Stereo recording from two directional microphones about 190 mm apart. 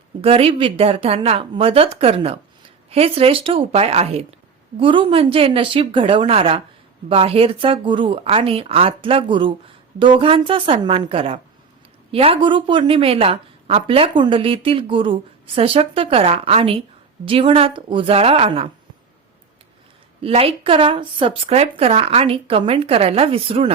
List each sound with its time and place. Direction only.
0.2 s a woman's voice: 30° right (ahead or behind)
20.2 s a woman's voice: 30° right (ahead or behind)